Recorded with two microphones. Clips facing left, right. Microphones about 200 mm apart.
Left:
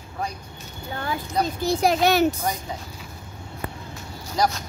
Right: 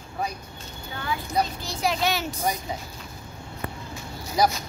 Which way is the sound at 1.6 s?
55° left (ahead or behind).